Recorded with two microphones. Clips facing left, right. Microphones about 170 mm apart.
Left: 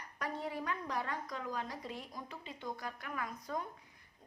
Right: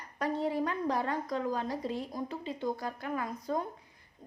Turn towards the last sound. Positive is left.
turn(degrees=-30)  # may be behind; listen again after turning